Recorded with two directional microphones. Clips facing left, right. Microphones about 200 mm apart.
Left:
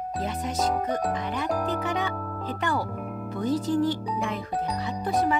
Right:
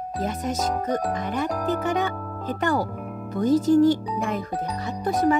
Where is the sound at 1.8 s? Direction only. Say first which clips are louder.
Right 4 dB; 45° right (ahead or behind).